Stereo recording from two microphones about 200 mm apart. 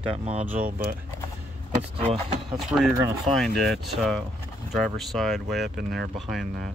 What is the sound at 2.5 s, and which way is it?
Speech, centre (ahead or behind).